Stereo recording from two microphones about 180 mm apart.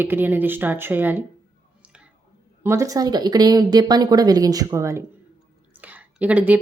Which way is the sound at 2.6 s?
20° right (ahead or behind).